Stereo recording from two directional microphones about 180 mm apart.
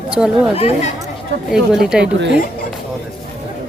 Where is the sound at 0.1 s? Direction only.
5° right (ahead or behind).